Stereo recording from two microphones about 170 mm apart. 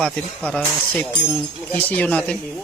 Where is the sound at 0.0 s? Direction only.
10° left (ahead or behind).